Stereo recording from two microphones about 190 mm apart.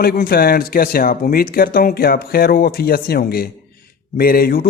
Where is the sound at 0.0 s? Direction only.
55° left (ahead or behind).